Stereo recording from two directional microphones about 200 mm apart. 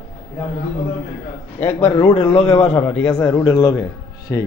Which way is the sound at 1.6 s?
35° left (ahead or behind).